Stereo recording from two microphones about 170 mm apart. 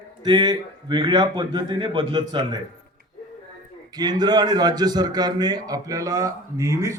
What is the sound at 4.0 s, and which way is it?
A man's voice, 25° right (ahead or behind).